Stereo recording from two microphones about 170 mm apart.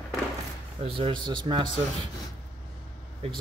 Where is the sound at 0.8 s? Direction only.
30° right (ahead or behind).